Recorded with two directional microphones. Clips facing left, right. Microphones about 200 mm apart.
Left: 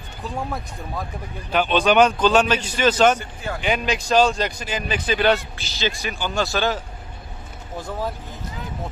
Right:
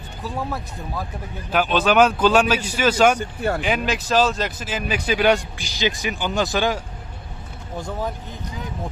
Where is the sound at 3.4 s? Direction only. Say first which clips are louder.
Right 7 dB; 60° right (ahead or behind).